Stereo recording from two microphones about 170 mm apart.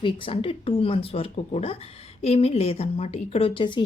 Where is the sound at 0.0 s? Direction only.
30° left (ahead or behind).